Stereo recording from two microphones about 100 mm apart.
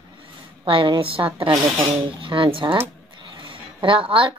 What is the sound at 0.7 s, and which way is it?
A woman's voice, 60° right (ahead or behind).